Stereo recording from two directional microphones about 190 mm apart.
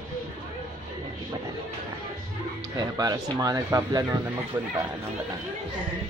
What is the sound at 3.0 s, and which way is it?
Speech, 20° right (ahead or behind).